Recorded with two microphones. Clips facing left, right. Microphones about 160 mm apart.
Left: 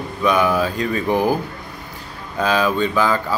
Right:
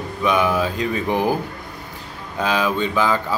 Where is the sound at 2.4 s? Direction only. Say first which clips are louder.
Left 2 dB; 15° right (ahead or behind).